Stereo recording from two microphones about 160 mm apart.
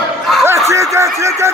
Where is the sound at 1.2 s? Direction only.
20° right (ahead or behind).